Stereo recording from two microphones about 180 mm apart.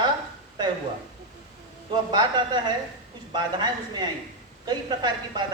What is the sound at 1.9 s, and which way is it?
A woman's voice, 25° right (ahead or behind).